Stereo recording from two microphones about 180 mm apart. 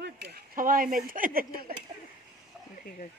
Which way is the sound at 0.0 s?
60° right (ahead or behind).